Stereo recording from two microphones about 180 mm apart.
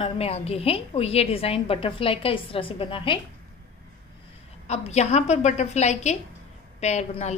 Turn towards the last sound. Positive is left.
turn(degrees=40)  # may be behind; listen again after turning